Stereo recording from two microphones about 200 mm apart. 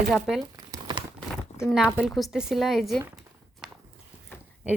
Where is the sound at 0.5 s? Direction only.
20° right (ahead or behind).